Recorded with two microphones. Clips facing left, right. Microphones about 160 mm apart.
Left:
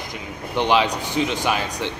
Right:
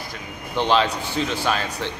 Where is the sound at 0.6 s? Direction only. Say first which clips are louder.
Left 1 dB; 15° left (ahead or behind).